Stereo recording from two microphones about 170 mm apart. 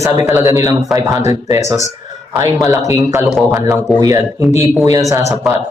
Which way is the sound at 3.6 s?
15° right (ahead or behind).